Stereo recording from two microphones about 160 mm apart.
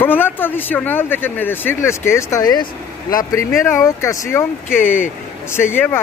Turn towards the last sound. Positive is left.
turn(degrees=15)  # may be behind; listen again after turning